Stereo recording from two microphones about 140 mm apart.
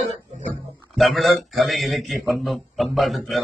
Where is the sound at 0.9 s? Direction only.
Centre (ahead or behind).